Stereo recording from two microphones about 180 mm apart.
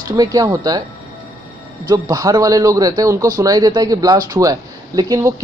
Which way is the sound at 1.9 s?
20° right (ahead or behind).